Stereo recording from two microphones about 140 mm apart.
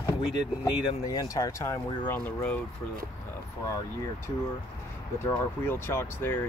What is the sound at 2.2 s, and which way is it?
Speech, 10° left (ahead or behind).